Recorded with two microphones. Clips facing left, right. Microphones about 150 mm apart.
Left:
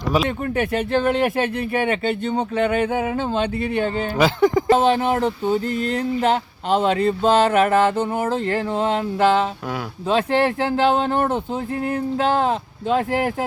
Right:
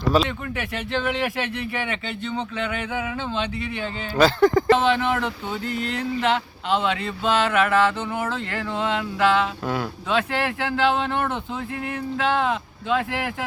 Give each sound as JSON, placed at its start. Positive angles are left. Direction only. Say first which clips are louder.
{"t": 0.3, "sound": "speech", "louder": "left 8 dB", "side_deg": 45}
{"t": 4.2, "sound": "speech", "louder": "right 1 dB", "side_deg": 15}
{"t": 4.8, "sound": "speech", "louder": "left 4 dB", "side_deg": 40}